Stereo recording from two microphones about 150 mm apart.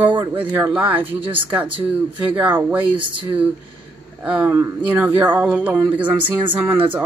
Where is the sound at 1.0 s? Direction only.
35° right (ahead or behind).